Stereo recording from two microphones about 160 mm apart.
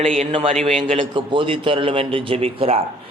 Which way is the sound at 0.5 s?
45° right (ahead or behind).